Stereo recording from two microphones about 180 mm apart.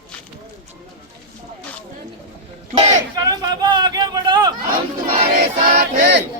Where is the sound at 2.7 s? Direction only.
35° right (ahead or behind).